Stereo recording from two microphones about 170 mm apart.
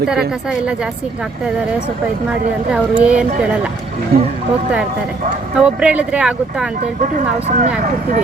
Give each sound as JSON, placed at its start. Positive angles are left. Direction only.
{"t": 0.1, "sound": "a woman's voice", "side_deg": -5}
{"t": 2.3, "sound": "speech", "side_deg": -5}
{"t": 4.1, "sound": "speech", "side_deg": -60}
{"t": 5.5, "sound": "speech", "side_deg": -5}
{"t": 7.3, "sound": "speech", "side_deg": -40}